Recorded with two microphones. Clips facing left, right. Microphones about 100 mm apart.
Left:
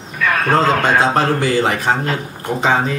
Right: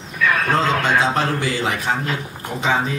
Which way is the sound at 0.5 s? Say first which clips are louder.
Left 7 dB; 40° left (ahead or behind).